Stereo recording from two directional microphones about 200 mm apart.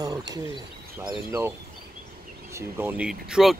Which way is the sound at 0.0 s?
20° right (ahead or behind).